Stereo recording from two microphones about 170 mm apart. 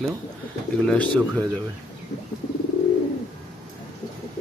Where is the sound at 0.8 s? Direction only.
5° left (ahead or behind).